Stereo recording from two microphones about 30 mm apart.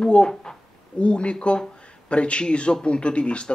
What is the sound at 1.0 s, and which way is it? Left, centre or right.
Speech, left.